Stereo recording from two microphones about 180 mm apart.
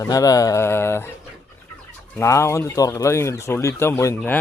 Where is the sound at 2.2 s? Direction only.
15° left (ahead or behind).